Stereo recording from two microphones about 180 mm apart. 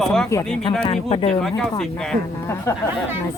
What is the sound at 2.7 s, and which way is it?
Speech, 15° left (ahead or behind).